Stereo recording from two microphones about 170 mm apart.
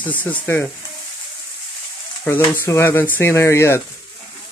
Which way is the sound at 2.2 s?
10° left (ahead or behind).